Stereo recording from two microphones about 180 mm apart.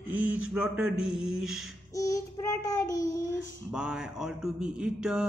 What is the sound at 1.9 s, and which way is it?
Child singing, 20° left (ahead or behind).